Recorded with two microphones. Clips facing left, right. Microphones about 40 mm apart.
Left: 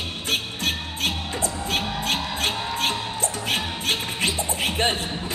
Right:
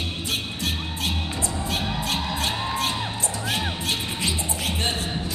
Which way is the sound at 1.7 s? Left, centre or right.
Left.